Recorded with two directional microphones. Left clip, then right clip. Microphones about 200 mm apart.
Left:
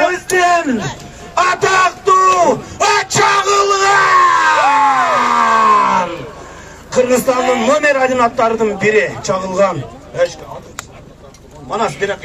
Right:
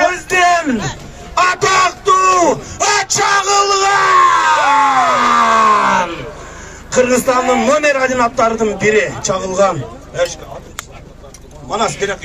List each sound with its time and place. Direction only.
0.3 s a sound: 15° right (ahead or behind)
7.6 s a man's voice: 15° right (ahead or behind)
11.7 s a man's voice: 15° right (ahead or behind)